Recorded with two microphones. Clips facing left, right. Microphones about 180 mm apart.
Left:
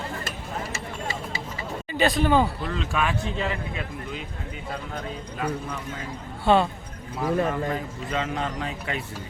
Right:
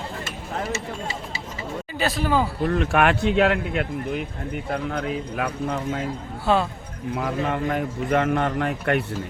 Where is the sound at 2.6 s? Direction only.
60° right (ahead or behind).